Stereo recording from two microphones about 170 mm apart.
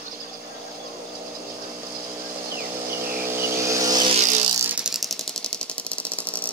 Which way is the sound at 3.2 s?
15° right (ahead or behind).